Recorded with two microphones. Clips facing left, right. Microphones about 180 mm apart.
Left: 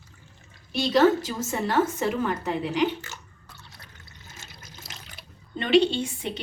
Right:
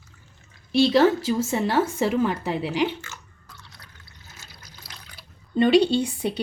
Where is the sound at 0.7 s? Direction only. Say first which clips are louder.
Right 2 dB; 30° right (ahead or behind).